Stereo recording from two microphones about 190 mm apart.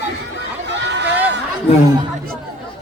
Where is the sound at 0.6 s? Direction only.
65° right (ahead or behind).